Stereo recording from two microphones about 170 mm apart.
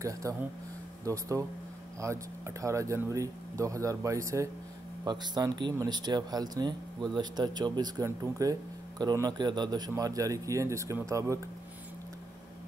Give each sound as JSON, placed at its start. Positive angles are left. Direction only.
{"t": 0.0, "sound": "speech", "side_deg": -20}